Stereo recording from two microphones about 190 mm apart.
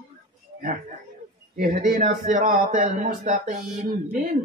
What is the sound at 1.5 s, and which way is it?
A man's voice, 50° right (ahead or behind).